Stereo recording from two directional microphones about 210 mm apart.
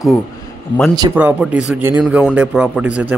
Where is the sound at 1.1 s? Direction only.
5° right (ahead or behind).